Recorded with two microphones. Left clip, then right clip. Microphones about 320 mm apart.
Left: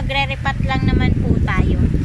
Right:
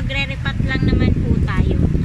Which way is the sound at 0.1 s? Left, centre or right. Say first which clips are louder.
Left 4 dB; centre.